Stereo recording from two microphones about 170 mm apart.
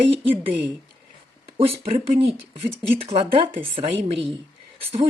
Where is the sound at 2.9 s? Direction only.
35° right (ahead or behind).